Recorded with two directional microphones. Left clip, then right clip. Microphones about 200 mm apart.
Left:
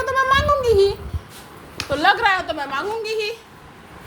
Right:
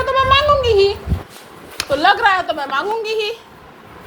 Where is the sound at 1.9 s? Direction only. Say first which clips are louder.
Right 3 dB; 45° left (ahead or behind).